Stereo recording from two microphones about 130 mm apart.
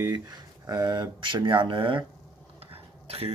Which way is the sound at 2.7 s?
50° right (ahead or behind).